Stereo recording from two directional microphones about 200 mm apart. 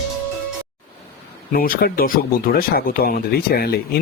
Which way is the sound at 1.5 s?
50° left (ahead or behind).